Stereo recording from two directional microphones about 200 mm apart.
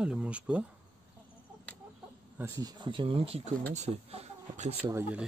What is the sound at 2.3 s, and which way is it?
Speech, 15° right (ahead or behind).